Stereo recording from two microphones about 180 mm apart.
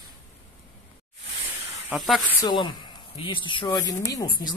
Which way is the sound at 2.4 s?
25° left (ahead or behind).